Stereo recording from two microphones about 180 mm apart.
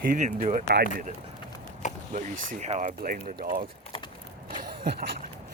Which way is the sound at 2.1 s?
40° right (ahead or behind).